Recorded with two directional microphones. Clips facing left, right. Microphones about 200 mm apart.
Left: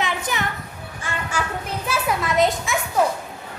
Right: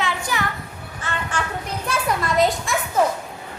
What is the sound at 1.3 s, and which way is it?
Music, 10° left (ahead or behind).